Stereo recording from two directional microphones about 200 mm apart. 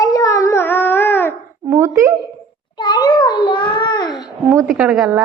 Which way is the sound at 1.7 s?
15° right (ahead or behind).